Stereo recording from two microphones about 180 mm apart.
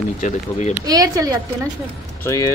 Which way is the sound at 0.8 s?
20° right (ahead or behind).